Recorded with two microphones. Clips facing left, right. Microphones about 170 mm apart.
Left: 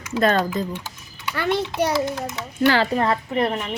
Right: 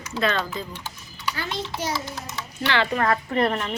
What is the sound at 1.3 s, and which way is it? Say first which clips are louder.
A child's voice: left 12 dB; 60° left (ahead or behind).